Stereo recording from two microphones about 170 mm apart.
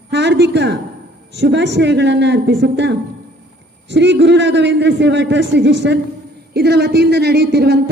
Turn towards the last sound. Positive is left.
turn(degrees=-70)  # may be behind; listen again after turning